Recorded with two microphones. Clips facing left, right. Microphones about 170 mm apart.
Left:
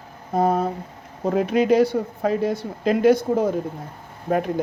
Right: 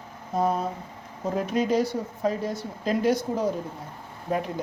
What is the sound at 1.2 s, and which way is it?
A man's voice, 70° left (ahead or behind).